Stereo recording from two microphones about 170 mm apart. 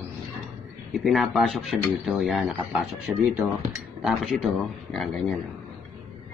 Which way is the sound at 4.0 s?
Centre (ahead or behind).